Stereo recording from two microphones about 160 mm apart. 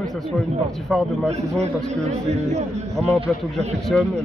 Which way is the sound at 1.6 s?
45° right (ahead or behind).